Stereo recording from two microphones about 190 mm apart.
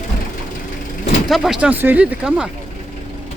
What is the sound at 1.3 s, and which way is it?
Speech, 5° right (ahead or behind).